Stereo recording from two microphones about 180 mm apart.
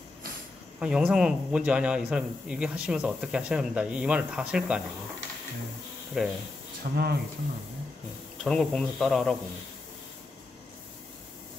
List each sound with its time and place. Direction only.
0.7 s a man's voice: 5° right (ahead or behind)
6.2 s a man's voice: centre (ahead or behind)
6.8 s speech: 60° right (ahead or behind)
8.5 s a man's voice: centre (ahead or behind)